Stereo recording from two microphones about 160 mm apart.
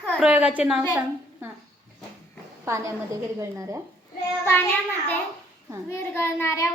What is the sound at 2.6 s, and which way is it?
A woman's voice, 20° right (ahead or behind).